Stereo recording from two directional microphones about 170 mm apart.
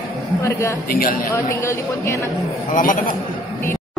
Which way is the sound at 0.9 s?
55° left (ahead or behind).